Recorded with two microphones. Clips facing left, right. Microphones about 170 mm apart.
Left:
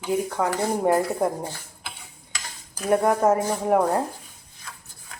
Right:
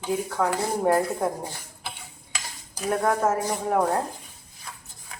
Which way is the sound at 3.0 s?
15° left (ahead or behind).